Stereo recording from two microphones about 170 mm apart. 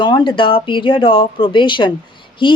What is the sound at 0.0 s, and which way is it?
Speech, 25° left (ahead or behind).